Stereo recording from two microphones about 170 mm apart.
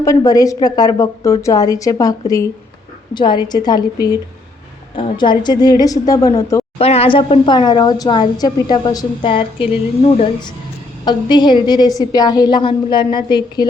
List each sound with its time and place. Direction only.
0.0 s a woman's voice: 20° left (ahead or behind)
4.9 s a woman's voice: 30° left (ahead or behind)
6.7 s a woman's voice: 35° left (ahead or behind)
11.0 s a woman's voice: 25° left (ahead or behind)